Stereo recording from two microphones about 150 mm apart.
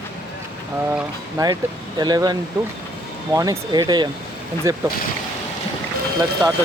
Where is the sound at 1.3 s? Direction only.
25° right (ahead or behind).